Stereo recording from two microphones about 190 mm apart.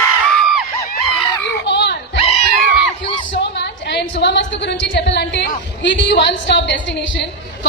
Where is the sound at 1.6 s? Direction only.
65° left (ahead or behind).